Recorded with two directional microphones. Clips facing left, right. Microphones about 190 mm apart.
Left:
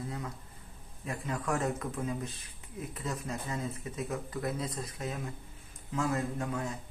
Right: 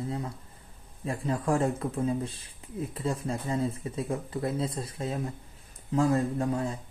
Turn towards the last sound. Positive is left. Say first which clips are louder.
# right 6 dB
turn(degrees=-30)  # may be behind; listen again after turning